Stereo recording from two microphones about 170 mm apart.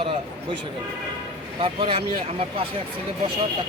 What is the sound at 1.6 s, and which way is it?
Speech, 30° right (ahead or behind).